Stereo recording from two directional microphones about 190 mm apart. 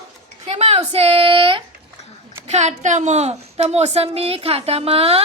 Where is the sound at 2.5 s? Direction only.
35° right (ahead or behind).